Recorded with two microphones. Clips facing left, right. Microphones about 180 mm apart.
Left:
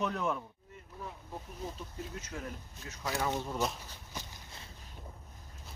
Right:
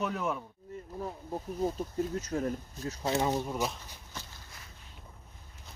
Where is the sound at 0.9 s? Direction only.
40° right (ahead or behind).